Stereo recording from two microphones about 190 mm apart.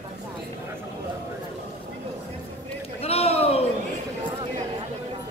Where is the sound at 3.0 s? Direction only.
30° left (ahead or behind).